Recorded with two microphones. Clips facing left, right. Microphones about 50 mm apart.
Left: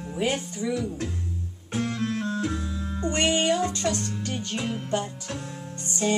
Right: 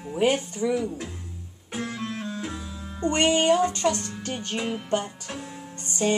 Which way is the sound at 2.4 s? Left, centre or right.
Centre.